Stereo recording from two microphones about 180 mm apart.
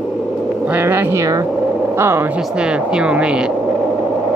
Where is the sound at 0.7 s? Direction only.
10° right (ahead or behind).